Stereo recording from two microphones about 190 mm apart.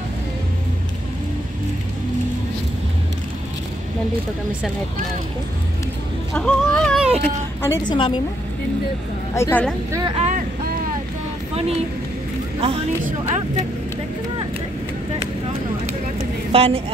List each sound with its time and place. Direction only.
6.3 s speech: 5° left (ahead or behind)
7.1 s speech: 35° right (ahead or behind)
7.6 s a woman's voice: 15° left (ahead or behind)
9.3 s a woman's voice: 10° left (ahead or behind)
10.1 s boat: 40° right (ahead or behind)
12.5 s speech: 30° right (ahead or behind)
16.5 s a woman's voice: 30° right (ahead or behind)